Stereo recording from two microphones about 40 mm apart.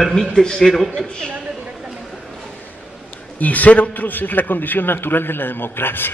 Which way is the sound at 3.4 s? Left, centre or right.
Left.